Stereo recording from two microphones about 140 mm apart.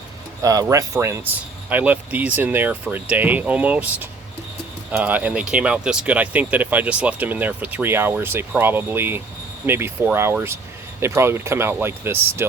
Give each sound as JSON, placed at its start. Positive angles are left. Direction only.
{"t": 0.4, "sound": "speech", "side_deg": -25}